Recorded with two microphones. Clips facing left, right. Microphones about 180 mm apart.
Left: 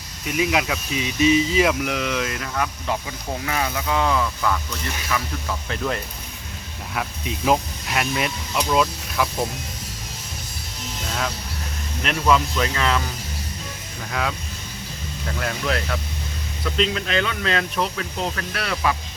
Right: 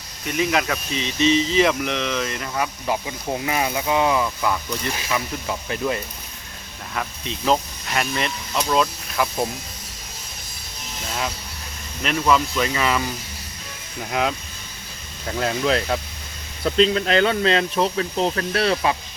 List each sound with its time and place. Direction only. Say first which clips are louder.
0.3 s speech: even; 5° left (ahead or behind)
2.8 s speech: right 2 dB; 20° right (ahead or behind)
5.7 s speech: right 2 dB; 10° right (ahead or behind)
6.9 s speech: left 1 dB; 5° left (ahead or behind)
12.0 s speech: even; centre (ahead or behind)
14.1 s speech: right 3 dB; 20° right (ahead or behind)
15.4 s speech: right 5 dB; 30° right (ahead or behind)